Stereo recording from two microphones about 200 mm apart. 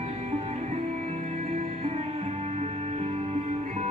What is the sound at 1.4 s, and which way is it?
Music, 30° right (ahead or behind).